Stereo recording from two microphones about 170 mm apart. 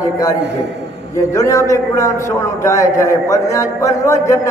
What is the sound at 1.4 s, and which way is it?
A man's voice, 20° left (ahead or behind).